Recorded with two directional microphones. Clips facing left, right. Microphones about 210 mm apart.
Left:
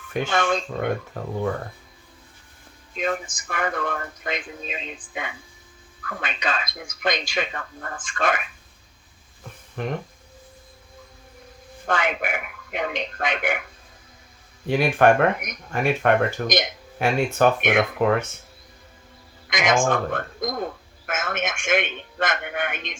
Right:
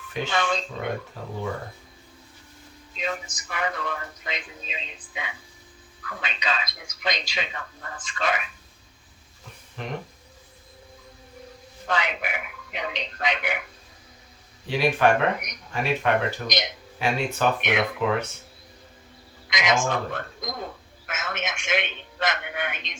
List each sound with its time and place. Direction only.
0.1 s speech: 50° left (ahead or behind)
2.9 s speech: 50° left (ahead or behind)
9.8 s speech: 55° left (ahead or behind)
11.9 s speech: 50° left (ahead or behind)
14.7 s speech: 50° left (ahead or behind)
19.5 s speech: 50° left (ahead or behind)